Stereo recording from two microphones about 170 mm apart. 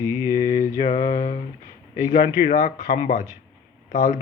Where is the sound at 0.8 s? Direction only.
40° left (ahead or behind).